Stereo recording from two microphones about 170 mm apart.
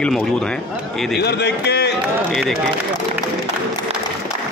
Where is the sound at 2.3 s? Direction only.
Centre (ahead or behind).